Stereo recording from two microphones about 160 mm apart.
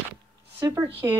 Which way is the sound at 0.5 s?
20° right (ahead or behind).